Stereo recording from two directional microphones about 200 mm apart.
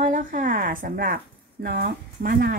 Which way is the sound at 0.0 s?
40° right (ahead or behind).